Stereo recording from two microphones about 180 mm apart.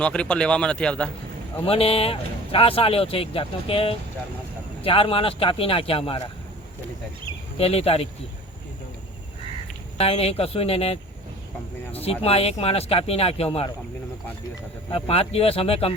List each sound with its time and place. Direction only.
0.0 s speech: 5° left (ahead or behind)
1.6 s speech: 30° left (ahead or behind)
7.6 s speech: 35° left (ahead or behind)
10.0 s speech: 35° left (ahead or behind)
14.8 s speech: 30° left (ahead or behind)